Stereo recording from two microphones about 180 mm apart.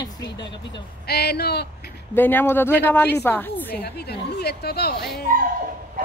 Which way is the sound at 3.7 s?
60° left (ahead or behind).